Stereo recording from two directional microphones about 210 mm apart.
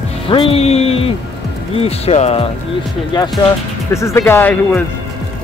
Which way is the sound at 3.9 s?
15° left (ahead or behind).